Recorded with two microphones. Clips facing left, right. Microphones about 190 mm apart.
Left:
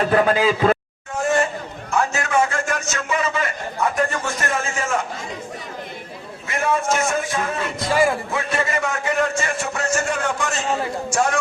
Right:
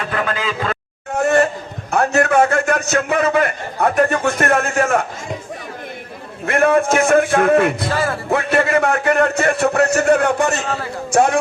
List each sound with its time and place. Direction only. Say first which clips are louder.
0.0 s speech: left 5 dB; 35° left (ahead or behind)
1.1 s a sound: right 5 dB; 65° right (ahead or behind)
1.9 s a man's voice: right 6 dB; 60° right (ahead or behind)
6.4 s a man's voice: right 8 dB; 60° right (ahead or behind)
7.9 s speech: left 2 dB; 15° left (ahead or behind)
8.3 s a man's voice: right 7 dB; 60° right (ahead or behind)